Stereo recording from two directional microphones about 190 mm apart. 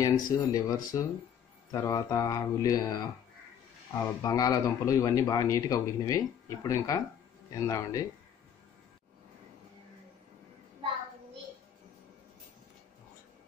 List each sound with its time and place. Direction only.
0.0 s speech: 20° left (ahead or behind)